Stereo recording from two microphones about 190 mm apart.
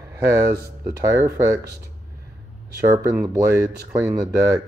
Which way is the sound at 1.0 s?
15° right (ahead or behind).